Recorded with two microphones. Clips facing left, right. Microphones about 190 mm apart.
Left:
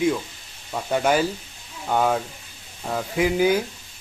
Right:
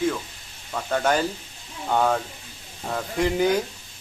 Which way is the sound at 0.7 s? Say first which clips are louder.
Left 2 dB; 10° left (ahead or behind).